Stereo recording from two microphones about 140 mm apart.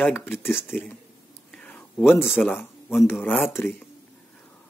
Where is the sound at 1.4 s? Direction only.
5° left (ahead or behind).